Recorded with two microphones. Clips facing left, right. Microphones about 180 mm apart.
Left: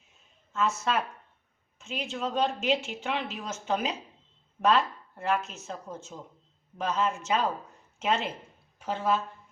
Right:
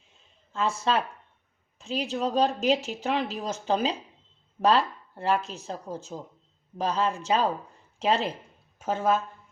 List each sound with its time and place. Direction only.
0.1 s a sound: 30° right (ahead or behind)
1.8 s speech: 35° right (ahead or behind)
8.8 s speech: 45° right (ahead or behind)